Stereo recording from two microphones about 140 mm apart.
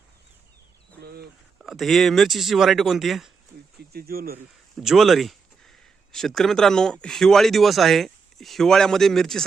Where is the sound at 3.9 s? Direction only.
90° right.